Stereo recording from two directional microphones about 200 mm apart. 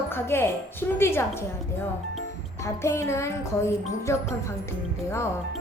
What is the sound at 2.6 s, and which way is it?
Speech, 15° left (ahead or behind).